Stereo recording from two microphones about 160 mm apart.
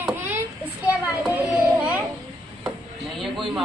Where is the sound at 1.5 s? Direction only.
Centre (ahead or behind).